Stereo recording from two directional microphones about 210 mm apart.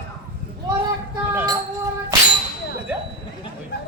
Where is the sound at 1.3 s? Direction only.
10° right (ahead or behind).